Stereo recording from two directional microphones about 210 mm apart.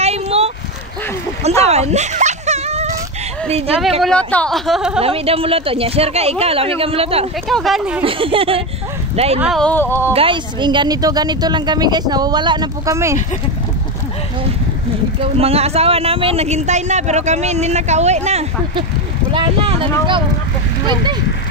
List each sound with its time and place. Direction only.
0.0 s a sound: 30° right (ahead or behind)
1.6 s music: 30° right (ahead or behind)
3.4 s a woman's voice: 30° right (ahead or behind)
4.0 s speech: 5° left (ahead or behind)
5.0 s a woman's voice: 25° right (ahead or behind)
7.4 s speech: centre (ahead or behind)
8.0 s a woman's voice: 25° right (ahead or behind)
9.4 s speech: centre (ahead or behind)
10.1 s a woman's voice: 25° right (ahead or behind)
15.1 s speech: 30° right (ahead or behind)
20.8 s a woman's voice: 20° right (ahead or behind)